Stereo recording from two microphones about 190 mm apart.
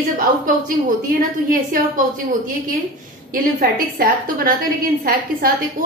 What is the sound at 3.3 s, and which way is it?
A woman's voice, 50° right (ahead or behind).